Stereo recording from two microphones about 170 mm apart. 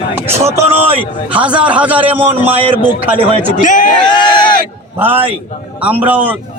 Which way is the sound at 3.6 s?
50° left (ahead or behind).